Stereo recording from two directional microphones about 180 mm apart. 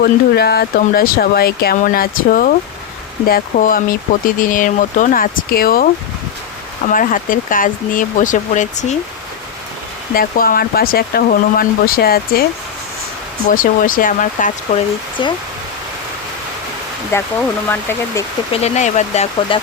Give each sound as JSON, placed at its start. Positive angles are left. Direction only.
{"t": 0.0, "sound": "speech", "side_deg": 60}
{"t": 6.9, "sound": "speech", "side_deg": 50}
{"t": 10.2, "sound": "speech", "side_deg": 55}
{"t": 13.5, "sound": "speech", "side_deg": 50}
{"t": 15.2, "sound": "speech", "side_deg": 25}
{"t": 17.1, "sound": "speech", "side_deg": 15}
{"t": 18.5, "sound": "speech", "side_deg": 35}